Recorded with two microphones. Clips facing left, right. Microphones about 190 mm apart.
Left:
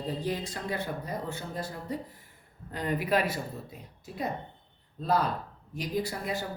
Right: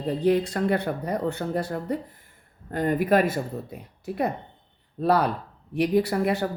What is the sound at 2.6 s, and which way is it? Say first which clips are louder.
Speech: right 7 dB; 50° right (ahead or behind).